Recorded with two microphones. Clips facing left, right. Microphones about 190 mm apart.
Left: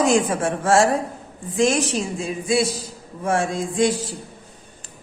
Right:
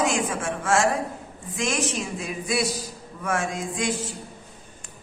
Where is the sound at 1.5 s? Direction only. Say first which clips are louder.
Left 7 dB; 30° left (ahead or behind).